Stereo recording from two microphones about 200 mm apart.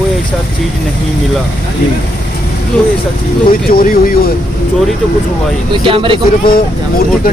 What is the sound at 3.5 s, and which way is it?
Speech, 45° left (ahead or behind).